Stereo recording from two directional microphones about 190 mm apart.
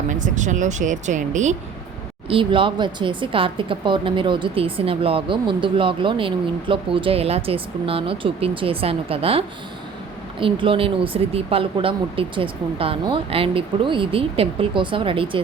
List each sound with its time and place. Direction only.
0.1 s speech: 40° right (ahead or behind)
2.3 s a woman's voice: 25° right (ahead or behind)
10.4 s a woman's voice: 30° right (ahead or behind)